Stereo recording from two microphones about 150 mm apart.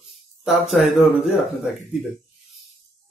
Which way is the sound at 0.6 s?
45° left (ahead or behind).